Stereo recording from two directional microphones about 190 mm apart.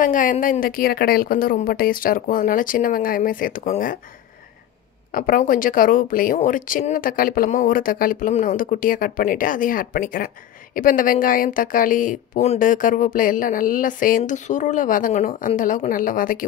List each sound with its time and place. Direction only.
0.0 s speech: 45° left (ahead or behind)
5.1 s speech: 50° left (ahead or behind)